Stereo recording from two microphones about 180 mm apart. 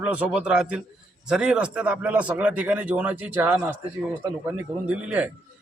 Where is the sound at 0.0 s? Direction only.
5° right (ahead or behind).